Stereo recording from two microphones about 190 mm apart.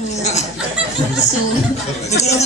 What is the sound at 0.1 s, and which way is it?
Chuckle, 35° left (ahead or behind).